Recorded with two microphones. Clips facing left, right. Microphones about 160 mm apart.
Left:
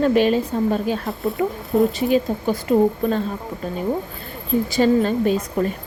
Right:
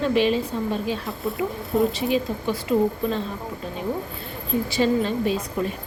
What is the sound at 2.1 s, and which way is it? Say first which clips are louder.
Speech: left 4 dB; 45° left (ahead or behind).